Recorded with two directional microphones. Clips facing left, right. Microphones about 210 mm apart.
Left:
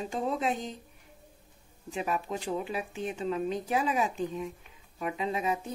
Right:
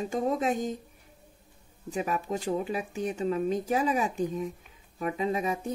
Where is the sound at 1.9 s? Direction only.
40° right (ahead or behind).